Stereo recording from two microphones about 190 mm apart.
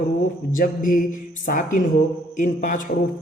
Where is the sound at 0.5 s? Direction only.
45° left (ahead or behind).